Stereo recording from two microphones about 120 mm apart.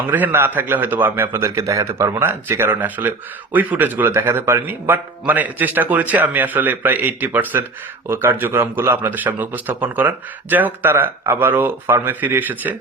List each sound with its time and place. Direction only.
0.1 s a man's voice: 20° right (ahead or behind)